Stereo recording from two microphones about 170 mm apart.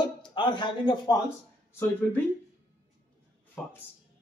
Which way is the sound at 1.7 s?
10° left (ahead or behind).